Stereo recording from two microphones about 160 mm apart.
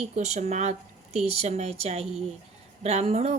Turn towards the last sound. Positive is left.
turn(degrees=-40)  # may be behind; listen again after turning